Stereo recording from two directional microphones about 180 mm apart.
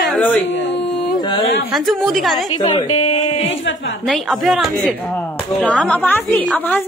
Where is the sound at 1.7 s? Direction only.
Centre (ahead or behind).